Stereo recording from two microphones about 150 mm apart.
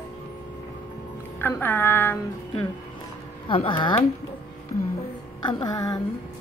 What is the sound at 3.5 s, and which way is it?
Speech, 35° left (ahead or behind).